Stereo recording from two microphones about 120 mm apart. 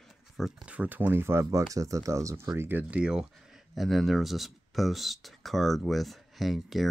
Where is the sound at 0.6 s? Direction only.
10° right (ahead or behind).